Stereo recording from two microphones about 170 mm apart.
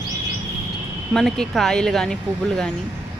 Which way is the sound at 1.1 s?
5° left (ahead or behind).